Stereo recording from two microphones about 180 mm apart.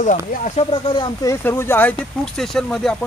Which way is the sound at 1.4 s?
15° left (ahead or behind).